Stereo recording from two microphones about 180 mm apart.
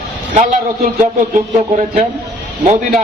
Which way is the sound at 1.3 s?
40° right (ahead or behind).